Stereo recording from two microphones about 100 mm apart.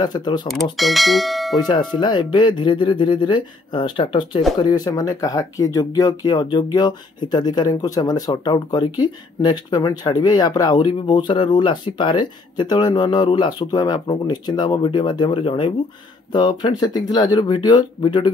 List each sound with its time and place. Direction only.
0.0 s speech: 45° left (ahead or behind)
0.7 s speech: centre (ahead or behind)
1.6 s speech: 45° left (ahead or behind)
4.6 s speech: 40° left (ahead or behind)
10.9 s speech: 55° left (ahead or behind)
16.3 s speech: 45° left (ahead or behind)